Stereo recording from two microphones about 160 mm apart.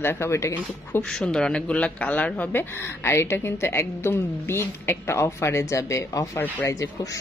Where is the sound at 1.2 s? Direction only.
5° left (ahead or behind).